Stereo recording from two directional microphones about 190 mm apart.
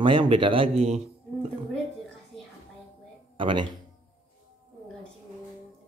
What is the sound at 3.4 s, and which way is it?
Speech, 25° right (ahead or behind).